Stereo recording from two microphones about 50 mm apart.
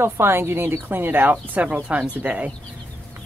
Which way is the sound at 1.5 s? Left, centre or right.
Right.